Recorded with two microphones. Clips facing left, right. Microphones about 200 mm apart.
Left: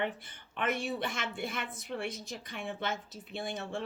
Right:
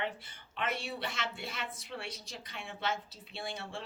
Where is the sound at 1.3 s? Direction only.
50° left (ahead or behind).